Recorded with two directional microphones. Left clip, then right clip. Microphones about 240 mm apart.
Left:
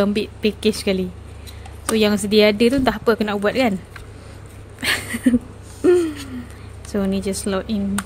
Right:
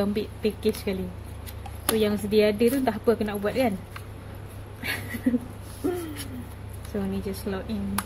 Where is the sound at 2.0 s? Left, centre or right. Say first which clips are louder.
Left 7 dB; left.